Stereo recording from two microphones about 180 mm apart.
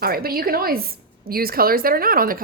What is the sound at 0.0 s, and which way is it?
A woman's voice, 55° right (ahead or behind).